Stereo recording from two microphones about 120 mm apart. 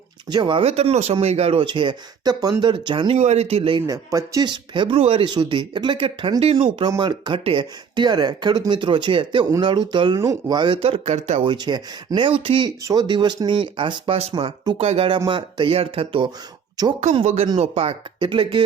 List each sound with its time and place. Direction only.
0.3 s speech: 40° right (ahead or behind)
0.6 s speech: 60° right (ahead or behind)
1.5 s speech: 45° right (ahead or behind)
3.2 s speech: 65° right (ahead or behind); by 3.8 s 50° right (ahead or behind)
3.8 s speech: 30° right (ahead or behind); by 5.2 s 50° right (ahead or behind)
5.2 s speech: 40° right (ahead or behind)
7.0 s speech: 40° right (ahead or behind); by 11.4 s 65° right (ahead or behind)
11.4 s speech: 35° right (ahead or behind)
12.8 s speech: 30° right (ahead or behind); by 14.3 s 55° right (ahead or behind)
14.3 s speech: 40° right (ahead or behind)
14.8 s speech: 55° right (ahead or behind)
16.8 s speech: 30° right (ahead or behind)
17.2 s speech: 55° right (ahead or behind)
18.3 s speech: 40° right (ahead or behind)